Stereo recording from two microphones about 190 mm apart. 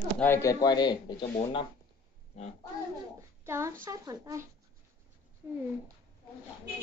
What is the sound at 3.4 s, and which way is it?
Speech, 15° right (ahead or behind).